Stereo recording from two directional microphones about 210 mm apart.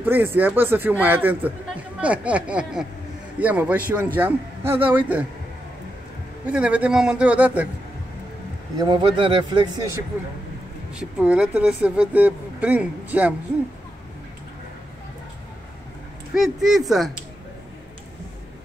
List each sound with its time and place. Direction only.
0.0 s speech: 10° right (ahead or behind)
6.4 s a man's voice: 5° right (ahead or behind)
8.7 s speech: 20° right (ahead or behind)
11.0 s speech: 5° right (ahead or behind)
16.3 s a man's voice: centre (ahead or behind)